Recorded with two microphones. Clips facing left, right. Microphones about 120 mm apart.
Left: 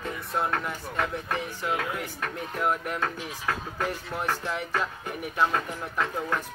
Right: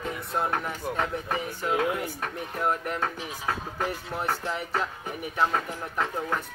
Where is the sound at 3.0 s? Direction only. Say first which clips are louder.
Even; 15° right (ahead or behind).